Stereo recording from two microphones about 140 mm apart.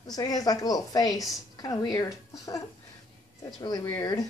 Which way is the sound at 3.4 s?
25° left (ahead or behind).